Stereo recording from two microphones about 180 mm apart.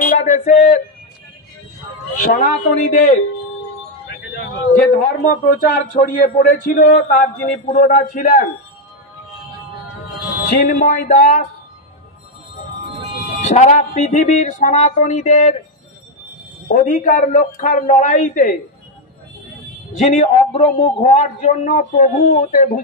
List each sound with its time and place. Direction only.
0.0 s a sound: 45° left (ahead or behind)
2.2 s a man's voice: 50° left (ahead or behind)
4.9 s a man's voice: 50° left (ahead or behind)
10.5 s a man's voice: 50° left (ahead or behind)
13.4 s a man's voice: 40° left (ahead or behind)
16.6 s a man's voice: 45° left (ahead or behind)
20.0 s a man's voice: 40° left (ahead or behind)